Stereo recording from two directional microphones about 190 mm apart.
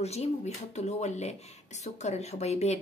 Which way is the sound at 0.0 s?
35° left (ahead or behind).